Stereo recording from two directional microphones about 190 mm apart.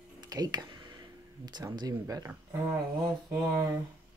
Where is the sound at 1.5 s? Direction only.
20° right (ahead or behind).